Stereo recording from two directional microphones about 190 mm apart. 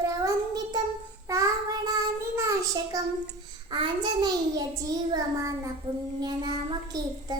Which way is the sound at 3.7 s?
25° right (ahead or behind).